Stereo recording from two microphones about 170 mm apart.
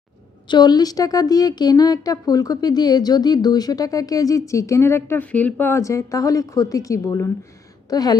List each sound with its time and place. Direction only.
0.4 s a woman's voice: 25° left (ahead or behind)